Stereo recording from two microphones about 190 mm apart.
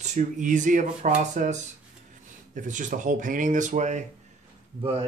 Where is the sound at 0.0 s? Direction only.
40° right (ahead or behind).